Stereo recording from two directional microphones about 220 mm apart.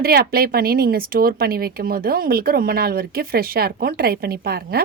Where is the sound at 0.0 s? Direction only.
45° right (ahead or behind).